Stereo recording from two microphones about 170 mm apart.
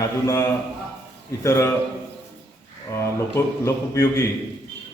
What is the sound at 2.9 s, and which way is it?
A man's voice, 15° left (ahead or behind).